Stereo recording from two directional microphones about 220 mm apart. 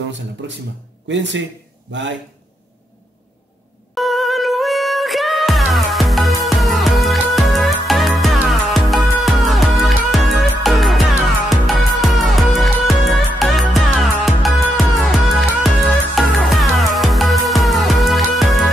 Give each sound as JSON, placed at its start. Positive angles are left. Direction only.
{"t": 1.0, "sound": "speech", "side_deg": -55}
{"t": 3.9, "sound": "music", "side_deg": 0}
{"t": 16.2, "sound": "music", "side_deg": 0}